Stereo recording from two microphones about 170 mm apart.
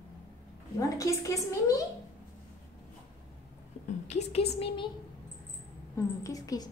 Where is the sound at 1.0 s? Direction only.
20° left (ahead or behind).